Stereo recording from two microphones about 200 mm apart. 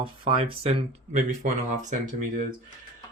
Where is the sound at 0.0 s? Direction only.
25° right (ahead or behind).